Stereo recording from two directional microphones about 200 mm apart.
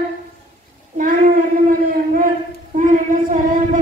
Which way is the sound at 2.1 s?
40° right (ahead or behind).